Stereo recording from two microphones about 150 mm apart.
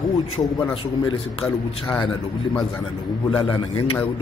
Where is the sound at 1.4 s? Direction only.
5° left (ahead or behind).